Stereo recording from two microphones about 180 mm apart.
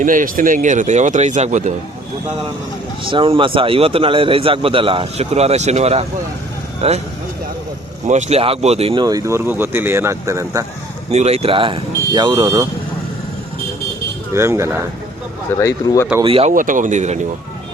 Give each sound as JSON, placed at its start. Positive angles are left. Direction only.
{"t": 0.0, "sound": "speech", "side_deg": -50}
{"t": 3.1, "sound": "a man's voice", "side_deg": -30}
{"t": 8.0, "sound": "speech", "side_deg": -40}
{"t": 11.1, "sound": "speech", "side_deg": -35}
{"t": 14.3, "sound": "speech", "side_deg": -15}
{"t": 15.5, "sound": "speech", "side_deg": 15}
{"t": 16.2, "sound": "a man's voice", "side_deg": -30}
{"t": 16.5, "sound": "speech", "side_deg": -45}